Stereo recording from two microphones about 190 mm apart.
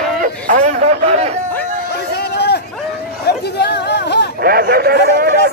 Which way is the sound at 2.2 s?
60° left (ahead or behind).